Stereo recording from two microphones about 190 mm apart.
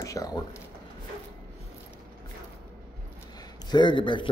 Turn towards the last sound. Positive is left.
turn(degrees=25)  # may be behind; listen again after turning